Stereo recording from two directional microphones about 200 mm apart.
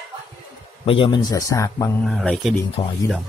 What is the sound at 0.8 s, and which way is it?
Speech, 30° left (ahead or behind).